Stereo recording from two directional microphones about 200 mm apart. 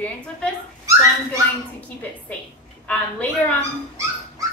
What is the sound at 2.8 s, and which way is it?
Speech, 10° left (ahead or behind).